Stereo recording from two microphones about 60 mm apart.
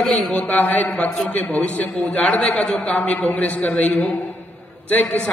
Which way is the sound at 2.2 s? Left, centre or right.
Centre.